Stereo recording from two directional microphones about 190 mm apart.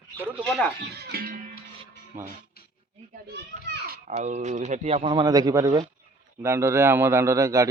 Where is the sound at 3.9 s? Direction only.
40° right (ahead or behind); by 7.6 s 15° right (ahead or behind).